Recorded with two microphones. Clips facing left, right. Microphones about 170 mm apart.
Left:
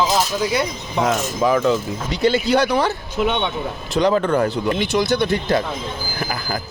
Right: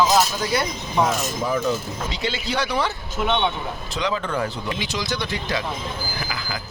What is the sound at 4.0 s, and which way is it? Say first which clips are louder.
Speech: left 8 dB; 50° left (ahead or behind).